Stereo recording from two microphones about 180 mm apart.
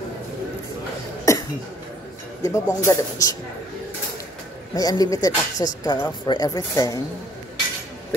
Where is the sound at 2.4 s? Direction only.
15° left (ahead or behind).